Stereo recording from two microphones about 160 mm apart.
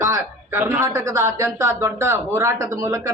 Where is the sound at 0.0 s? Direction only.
15° right (ahead or behind).